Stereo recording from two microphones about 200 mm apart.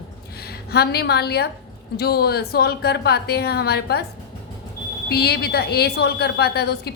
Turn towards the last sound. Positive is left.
turn(degrees=55)  # may be behind; listen again after turning